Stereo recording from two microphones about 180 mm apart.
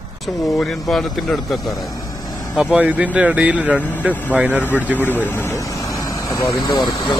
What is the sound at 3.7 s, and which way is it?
Speech, 10° left (ahead or behind).